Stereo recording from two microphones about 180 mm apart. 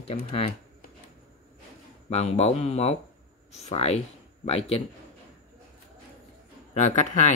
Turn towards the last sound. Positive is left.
turn(degrees=40)  # may be behind; listen again after turning